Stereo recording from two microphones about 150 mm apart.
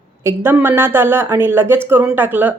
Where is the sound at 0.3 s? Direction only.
15° right (ahead or behind).